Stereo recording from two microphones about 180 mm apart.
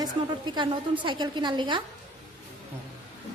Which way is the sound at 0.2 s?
30° right (ahead or behind).